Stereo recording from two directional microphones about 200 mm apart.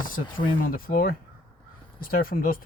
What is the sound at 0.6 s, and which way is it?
Speech, 45° left (ahead or behind).